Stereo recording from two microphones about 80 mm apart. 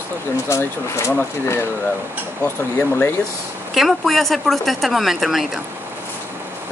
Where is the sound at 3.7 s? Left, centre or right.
Centre.